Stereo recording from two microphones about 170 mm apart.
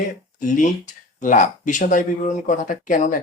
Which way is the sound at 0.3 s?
50° left (ahead or behind).